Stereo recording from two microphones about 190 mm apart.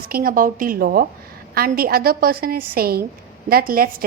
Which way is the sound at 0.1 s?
50° right (ahead or behind).